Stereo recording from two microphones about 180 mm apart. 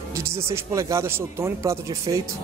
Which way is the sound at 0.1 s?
15° right (ahead or behind).